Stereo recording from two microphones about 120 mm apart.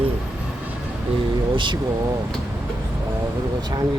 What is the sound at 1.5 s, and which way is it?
Speech, 40° right (ahead or behind).